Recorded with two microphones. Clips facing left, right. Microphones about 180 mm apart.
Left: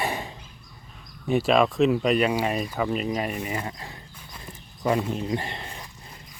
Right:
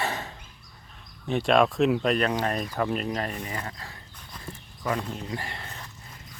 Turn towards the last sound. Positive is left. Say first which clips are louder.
# left 3 dB
turn(degrees=15)  # may be behind; listen again after turning